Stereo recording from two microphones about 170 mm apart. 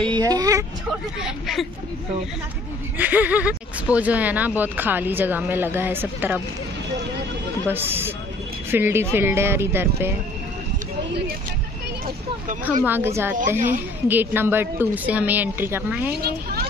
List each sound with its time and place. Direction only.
0.1 s speech: 20° right (ahead or behind)
3.0 s speech: 10° right (ahead or behind)
7.7 s speech: 15° right (ahead or behind)
12.8 s speech: 10° right (ahead or behind)
16.2 s speech: 70° right (ahead or behind)